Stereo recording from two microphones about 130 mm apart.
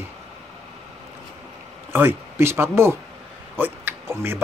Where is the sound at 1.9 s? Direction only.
15° right (ahead or behind).